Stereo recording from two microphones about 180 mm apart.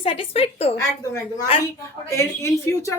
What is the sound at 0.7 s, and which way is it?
A woman's voice, 20° left (ahead or behind).